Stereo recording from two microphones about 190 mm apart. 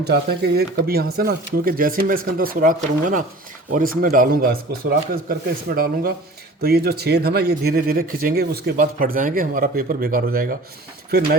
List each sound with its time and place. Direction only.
0.0 s speech: 60° right (ahead or behind)